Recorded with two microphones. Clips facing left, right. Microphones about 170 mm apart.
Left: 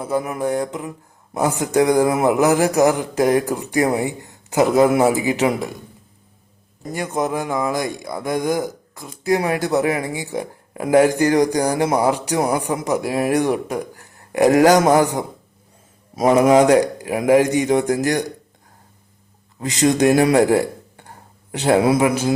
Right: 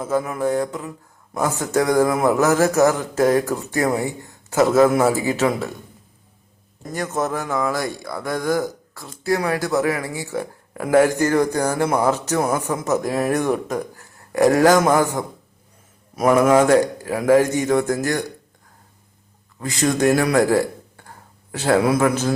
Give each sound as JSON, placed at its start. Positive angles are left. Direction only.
{"t": 0.0, "sound": "speech", "side_deg": 15}
{"t": 6.9, "sound": "speech", "side_deg": 15}
{"t": 19.5, "sound": "speech", "side_deg": 20}